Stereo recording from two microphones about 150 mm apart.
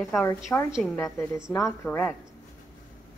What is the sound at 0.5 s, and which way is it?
Speech, 10° left (ahead or behind).